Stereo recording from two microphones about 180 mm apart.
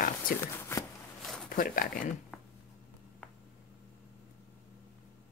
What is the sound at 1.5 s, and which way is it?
Speech, 50° left (ahead or behind).